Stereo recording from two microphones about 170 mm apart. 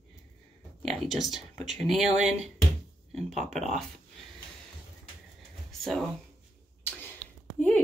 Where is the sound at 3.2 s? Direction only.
40° right (ahead or behind).